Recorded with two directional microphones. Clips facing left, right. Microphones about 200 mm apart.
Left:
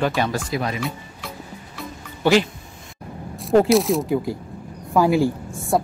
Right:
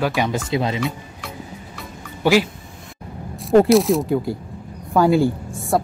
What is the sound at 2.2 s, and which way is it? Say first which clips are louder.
Speech: right 1 dB; 10° right (ahead or behind).